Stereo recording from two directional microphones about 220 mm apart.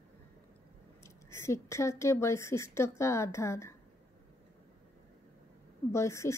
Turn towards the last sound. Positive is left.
turn(degrees=15)  # may be behind; listen again after turning